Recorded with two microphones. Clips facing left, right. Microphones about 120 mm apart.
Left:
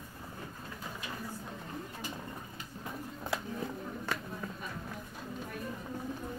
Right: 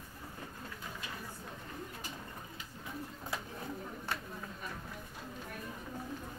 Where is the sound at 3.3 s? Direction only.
90° left.